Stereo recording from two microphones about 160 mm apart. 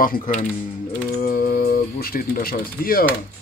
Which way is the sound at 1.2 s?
65° left (ahead or behind).